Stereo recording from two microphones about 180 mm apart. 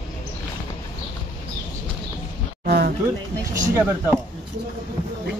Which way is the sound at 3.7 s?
10° right (ahead or behind).